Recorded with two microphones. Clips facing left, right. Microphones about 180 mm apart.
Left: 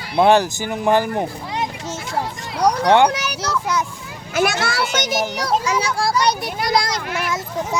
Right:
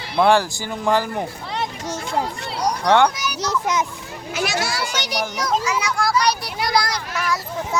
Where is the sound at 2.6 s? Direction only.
65° left (ahead or behind).